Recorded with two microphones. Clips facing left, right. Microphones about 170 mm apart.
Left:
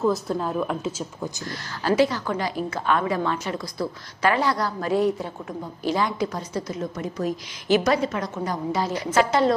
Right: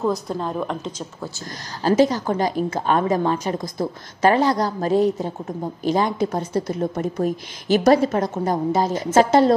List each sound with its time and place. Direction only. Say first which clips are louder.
0.1 s a woman's voice: even; 5° left (ahead or behind)
1.8 s a woman's voice: right 4 dB; 40° right (ahead or behind)